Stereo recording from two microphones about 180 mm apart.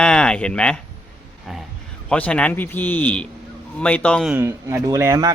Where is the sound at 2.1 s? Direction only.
5° left (ahead or behind).